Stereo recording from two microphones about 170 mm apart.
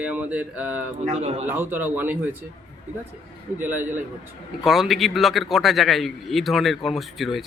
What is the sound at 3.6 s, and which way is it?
A man's voice, 10° right (ahead or behind).